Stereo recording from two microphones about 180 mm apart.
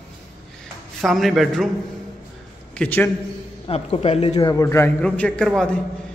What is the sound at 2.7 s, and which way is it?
Speech, 10° left (ahead or behind).